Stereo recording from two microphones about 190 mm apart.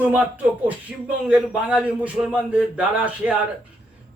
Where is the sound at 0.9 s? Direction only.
5° right (ahead or behind).